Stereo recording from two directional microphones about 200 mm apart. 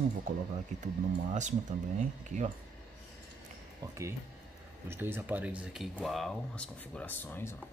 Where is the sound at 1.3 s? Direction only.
35° right (ahead or behind).